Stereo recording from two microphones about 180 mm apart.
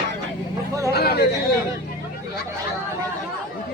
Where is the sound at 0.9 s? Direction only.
60° left (ahead or behind).